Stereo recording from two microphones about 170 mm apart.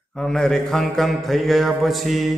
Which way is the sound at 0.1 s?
5° left (ahead or behind).